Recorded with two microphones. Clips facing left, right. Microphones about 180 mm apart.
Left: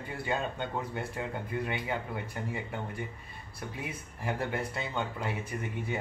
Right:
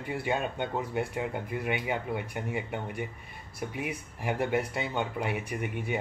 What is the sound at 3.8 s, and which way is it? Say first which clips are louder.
Speech: right 2 dB; 15° right (ahead or behind).